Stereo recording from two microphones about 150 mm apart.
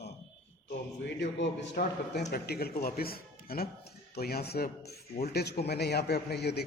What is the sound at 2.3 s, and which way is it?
A man's voice, 90° left.